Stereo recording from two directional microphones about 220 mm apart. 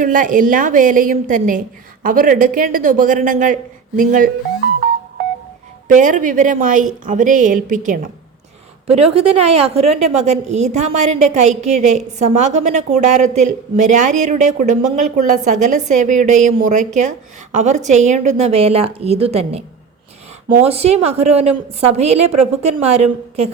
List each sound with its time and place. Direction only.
0.0 s a woman's voice: 35° right (ahead or behind)
5.9 s a woman's voice: 35° right (ahead or behind)